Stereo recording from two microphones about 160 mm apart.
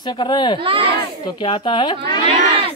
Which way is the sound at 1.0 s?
30° left (ahead or behind).